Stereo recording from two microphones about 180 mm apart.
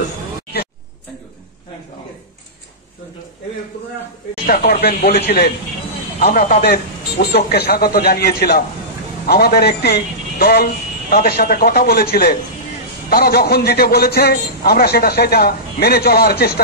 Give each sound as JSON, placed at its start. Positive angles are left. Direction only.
{"t": 4.5, "sound": "a man's voice", "side_deg": 60}
{"t": 6.2, "sound": "a man's voice", "side_deg": 45}
{"t": 6.6, "sound": "a man's voice", "side_deg": 65}